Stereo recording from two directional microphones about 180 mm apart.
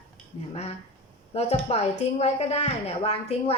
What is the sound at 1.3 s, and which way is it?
A woman's voice, 35° left (ahead or behind).